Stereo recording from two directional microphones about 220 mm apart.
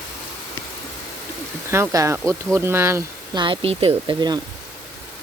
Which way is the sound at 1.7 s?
15° right (ahead or behind).